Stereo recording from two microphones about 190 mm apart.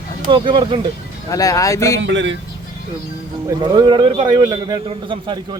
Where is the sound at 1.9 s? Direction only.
70° right (ahead or behind).